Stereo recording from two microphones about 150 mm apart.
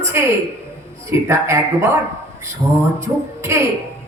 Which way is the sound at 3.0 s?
20° right (ahead or behind).